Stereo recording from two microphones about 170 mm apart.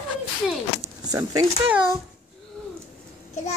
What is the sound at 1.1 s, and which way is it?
Speech, 20° right (ahead or behind).